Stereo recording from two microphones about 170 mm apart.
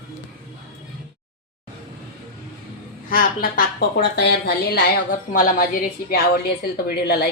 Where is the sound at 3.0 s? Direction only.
55° left (ahead or behind).